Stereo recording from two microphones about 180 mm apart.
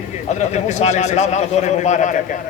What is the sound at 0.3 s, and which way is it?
A man's voice, 40° left (ahead or behind).